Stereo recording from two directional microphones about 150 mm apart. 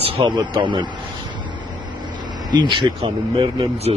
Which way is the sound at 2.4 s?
30° right (ahead or behind).